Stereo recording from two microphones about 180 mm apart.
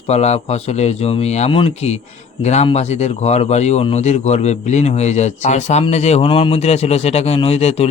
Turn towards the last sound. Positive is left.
turn(degrees=35)  # may be behind; listen again after turning